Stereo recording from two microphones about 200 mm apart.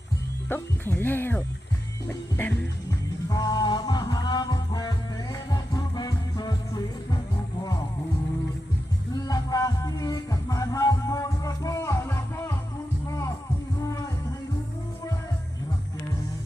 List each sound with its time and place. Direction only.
0.4 s speech: 10° left (ahead or behind)
2.0 s music: 10° left (ahead or behind)
9.1 s music: 20° left (ahead or behind)